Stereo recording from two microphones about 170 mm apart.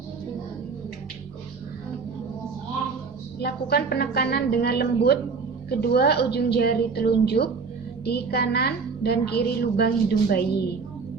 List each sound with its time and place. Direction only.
3.3 s a woman's voice: 70° left (ahead or behind)